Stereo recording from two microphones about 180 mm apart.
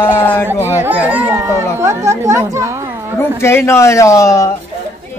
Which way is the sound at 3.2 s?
15° left (ahead or behind).